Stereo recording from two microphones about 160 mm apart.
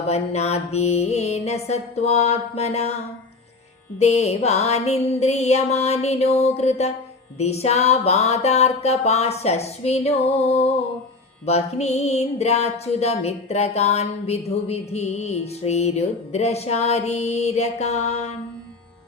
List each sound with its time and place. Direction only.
0.1 s music: 40° left (ahead or behind)